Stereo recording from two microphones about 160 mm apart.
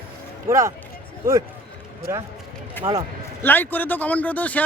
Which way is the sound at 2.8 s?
10° left (ahead or behind).